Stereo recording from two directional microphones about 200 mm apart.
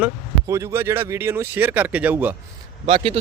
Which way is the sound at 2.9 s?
25° right (ahead or behind).